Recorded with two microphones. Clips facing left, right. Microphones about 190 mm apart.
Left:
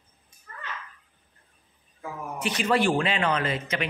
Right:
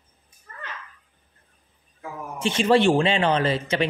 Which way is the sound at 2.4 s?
25° right (ahead or behind).